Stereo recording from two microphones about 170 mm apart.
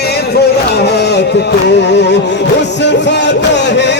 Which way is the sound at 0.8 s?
80° left.